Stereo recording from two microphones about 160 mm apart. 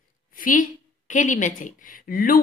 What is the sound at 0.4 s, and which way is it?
A woman's voice, 60° left (ahead or behind).